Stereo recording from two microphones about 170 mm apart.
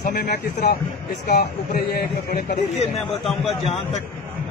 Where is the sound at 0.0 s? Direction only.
60° left (ahead or behind).